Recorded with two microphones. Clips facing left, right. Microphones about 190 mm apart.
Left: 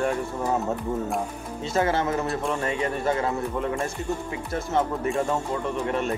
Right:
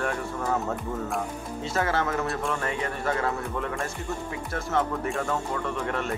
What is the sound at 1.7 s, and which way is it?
Speech, 20° left (ahead or behind).